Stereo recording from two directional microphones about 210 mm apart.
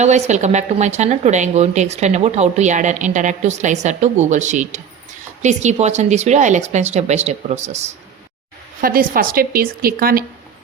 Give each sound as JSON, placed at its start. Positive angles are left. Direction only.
{"t": 0.0, "sound": "a woman's voice", "side_deg": -35}
{"t": 8.8, "sound": "a woman's voice", "side_deg": -45}